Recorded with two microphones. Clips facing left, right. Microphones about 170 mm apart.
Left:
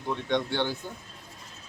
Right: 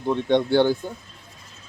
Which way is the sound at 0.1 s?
30° right (ahead or behind).